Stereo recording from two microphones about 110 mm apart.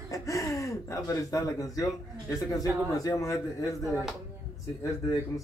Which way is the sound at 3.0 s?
30° left (ahead or behind).